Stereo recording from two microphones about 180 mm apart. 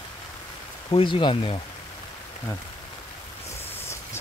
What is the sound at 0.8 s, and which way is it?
Speech, 30° left (ahead or behind).